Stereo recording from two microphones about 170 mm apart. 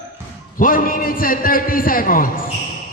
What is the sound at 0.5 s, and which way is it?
A man's voice, 55° left (ahead or behind).